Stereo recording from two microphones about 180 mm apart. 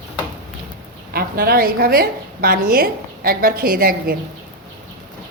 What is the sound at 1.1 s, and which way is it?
A woman's voice, 55° right (ahead or behind).